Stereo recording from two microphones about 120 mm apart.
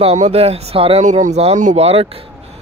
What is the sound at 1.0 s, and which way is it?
Speech, 85° right.